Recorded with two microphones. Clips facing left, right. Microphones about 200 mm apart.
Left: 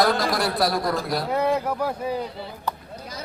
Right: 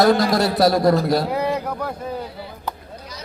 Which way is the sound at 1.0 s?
25° right (ahead or behind).